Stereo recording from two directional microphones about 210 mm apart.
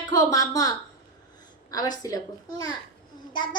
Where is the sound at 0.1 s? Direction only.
15° left (ahead or behind).